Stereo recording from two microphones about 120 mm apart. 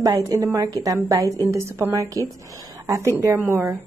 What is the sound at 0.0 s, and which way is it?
A woman's voice, 30° right (ahead or behind).